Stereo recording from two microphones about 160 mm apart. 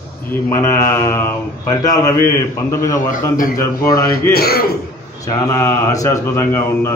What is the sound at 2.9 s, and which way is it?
Speech, 55° left (ahead or behind).